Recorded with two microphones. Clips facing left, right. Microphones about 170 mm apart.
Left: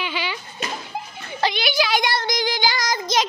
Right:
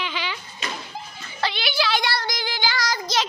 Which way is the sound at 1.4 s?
15° left (ahead or behind).